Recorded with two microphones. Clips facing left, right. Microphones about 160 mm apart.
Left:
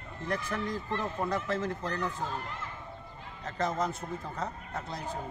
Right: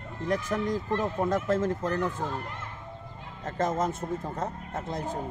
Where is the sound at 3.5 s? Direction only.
50° right (ahead or behind).